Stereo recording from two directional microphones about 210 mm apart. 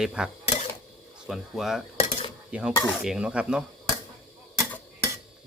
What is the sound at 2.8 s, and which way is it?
Dishes, centre (ahead or behind).